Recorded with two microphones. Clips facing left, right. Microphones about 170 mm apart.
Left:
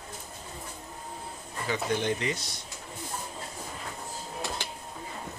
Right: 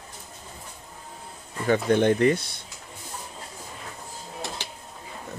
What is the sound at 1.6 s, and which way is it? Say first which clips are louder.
Speech: right 9 dB; 55° right (ahead or behind).